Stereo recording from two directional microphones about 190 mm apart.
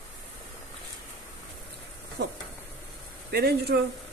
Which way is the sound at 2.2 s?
65° right (ahead or behind).